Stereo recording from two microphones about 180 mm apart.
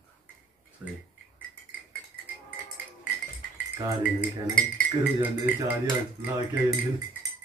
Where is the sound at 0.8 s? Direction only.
5° right (ahead or behind).